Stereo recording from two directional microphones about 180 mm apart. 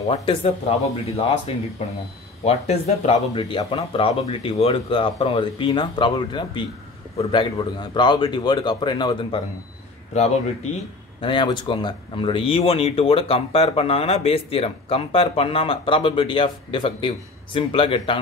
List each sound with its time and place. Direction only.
0.1 s speech: 30° left (ahead or behind)
11.1 s speech: 30° left (ahead or behind)